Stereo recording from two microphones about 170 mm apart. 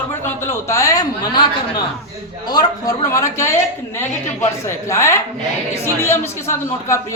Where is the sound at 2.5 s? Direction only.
25° left (ahead or behind).